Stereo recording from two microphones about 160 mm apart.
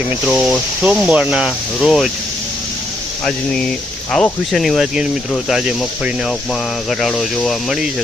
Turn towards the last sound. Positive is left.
turn(degrees=0)  # may be behind; listen again after turning